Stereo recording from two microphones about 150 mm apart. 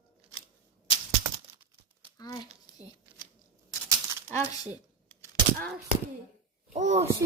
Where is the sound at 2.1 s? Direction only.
25° left (ahead or behind).